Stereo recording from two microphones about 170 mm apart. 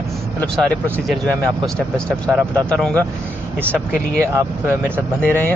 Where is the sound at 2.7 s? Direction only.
5° left (ahead or behind).